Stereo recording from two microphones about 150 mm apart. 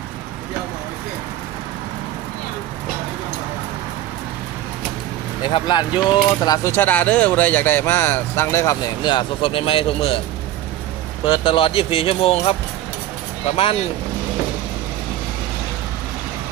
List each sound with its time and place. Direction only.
5.4 s speech: 30° left (ahead or behind)
9.0 s speech: 35° left (ahead or behind)
11.2 s speech: 35° left (ahead or behind)